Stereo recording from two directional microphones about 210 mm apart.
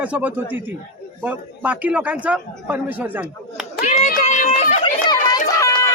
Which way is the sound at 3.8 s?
35° left (ahead or behind).